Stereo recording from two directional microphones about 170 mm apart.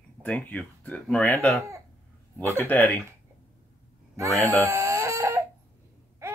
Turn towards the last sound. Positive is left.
turn(degrees=-15)  # may be behind; listen again after turning